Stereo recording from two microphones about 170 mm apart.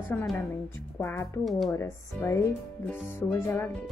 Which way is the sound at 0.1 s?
10° left (ahead or behind).